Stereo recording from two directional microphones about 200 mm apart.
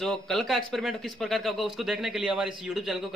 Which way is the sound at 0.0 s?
Centre (ahead or behind).